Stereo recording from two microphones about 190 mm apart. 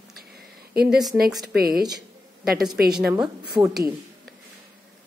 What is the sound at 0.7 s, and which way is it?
Speech, 60° right (ahead or behind).